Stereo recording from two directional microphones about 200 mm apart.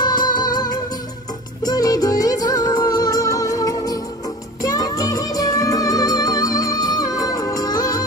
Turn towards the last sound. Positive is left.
turn(degrees=20)  # may be behind; listen again after turning